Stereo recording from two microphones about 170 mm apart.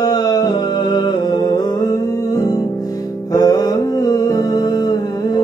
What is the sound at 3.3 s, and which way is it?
Music, 20° left (ahead or behind).